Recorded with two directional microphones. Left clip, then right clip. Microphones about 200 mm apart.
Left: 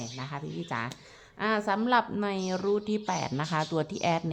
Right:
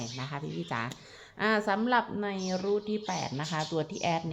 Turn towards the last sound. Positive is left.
turn(degrees=25)  # may be behind; listen again after turning